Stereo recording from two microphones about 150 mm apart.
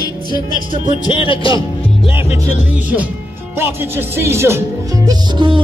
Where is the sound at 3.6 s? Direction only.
15° right (ahead or behind).